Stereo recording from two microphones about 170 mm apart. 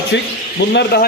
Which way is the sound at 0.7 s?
65° left (ahead or behind).